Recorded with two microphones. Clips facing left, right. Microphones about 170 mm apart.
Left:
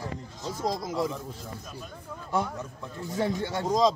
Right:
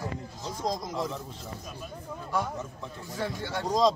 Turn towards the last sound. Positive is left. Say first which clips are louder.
# left 1 dB
turn(degrees=0)  # may be behind; listen again after turning